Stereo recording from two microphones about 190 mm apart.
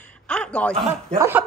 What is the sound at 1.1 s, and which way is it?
Speech, 10° right (ahead or behind).